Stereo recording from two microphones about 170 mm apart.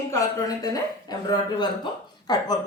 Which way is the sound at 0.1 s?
20° left (ahead or behind).